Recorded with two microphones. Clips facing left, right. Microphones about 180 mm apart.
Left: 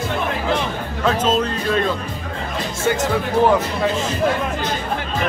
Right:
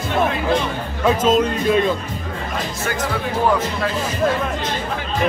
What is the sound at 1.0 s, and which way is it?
Speech, 10° right (ahead or behind).